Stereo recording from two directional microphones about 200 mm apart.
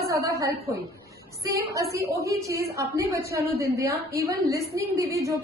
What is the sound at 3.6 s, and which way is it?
A woman's voice, 15° right (ahead or behind).